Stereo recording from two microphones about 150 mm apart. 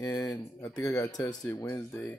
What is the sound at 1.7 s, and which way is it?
Speech, 5° left (ahead or behind).